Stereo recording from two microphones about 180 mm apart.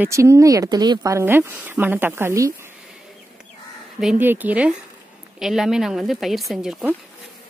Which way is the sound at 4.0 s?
5° right (ahead or behind).